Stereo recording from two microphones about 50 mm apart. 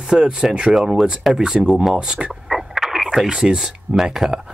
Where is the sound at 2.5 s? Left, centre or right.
Centre.